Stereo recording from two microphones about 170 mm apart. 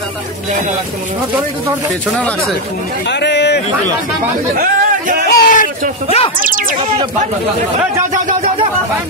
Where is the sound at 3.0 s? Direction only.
90° left.